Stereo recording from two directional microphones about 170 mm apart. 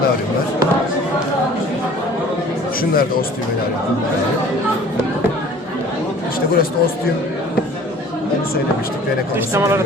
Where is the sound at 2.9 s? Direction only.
60° left (ahead or behind).